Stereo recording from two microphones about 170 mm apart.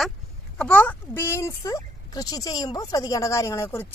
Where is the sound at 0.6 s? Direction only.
10° left (ahead or behind).